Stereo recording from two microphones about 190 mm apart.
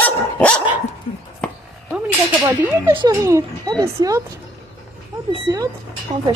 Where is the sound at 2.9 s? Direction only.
25° right (ahead or behind).